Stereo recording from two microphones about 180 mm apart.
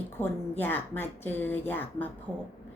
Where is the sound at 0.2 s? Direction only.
10° left (ahead or behind).